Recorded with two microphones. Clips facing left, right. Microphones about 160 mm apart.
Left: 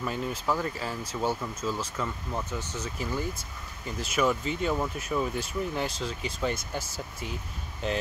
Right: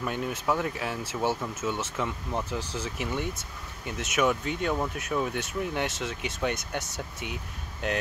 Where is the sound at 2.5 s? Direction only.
15° right (ahead or behind).